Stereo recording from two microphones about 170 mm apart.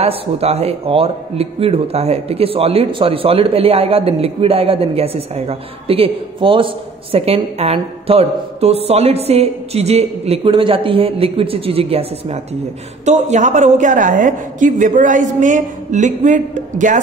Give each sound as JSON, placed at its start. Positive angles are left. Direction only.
{"t": 0.0, "sound": "a man's voice", "side_deg": -35}